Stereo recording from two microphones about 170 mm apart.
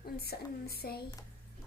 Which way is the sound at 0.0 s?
65° left (ahead or behind).